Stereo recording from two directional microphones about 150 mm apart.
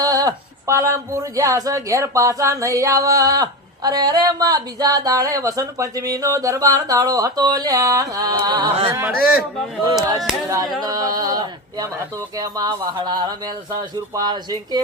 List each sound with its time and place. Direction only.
0.0 s speech: 25° right (ahead or behind)
8.9 s speech: 15° right (ahead or behind)
9.8 s speech: 25° right (ahead or behind)